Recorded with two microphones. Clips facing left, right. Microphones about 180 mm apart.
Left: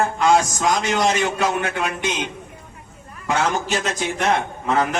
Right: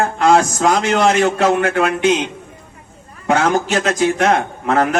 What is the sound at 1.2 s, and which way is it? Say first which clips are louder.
Speech: right 7 dB; 75° right (ahead or behind).